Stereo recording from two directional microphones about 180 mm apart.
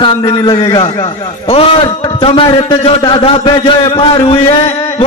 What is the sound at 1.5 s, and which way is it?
A man's voice, 30° left (ahead or behind).